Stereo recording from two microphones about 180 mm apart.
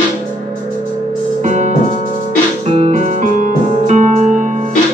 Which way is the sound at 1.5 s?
40° right (ahead or behind).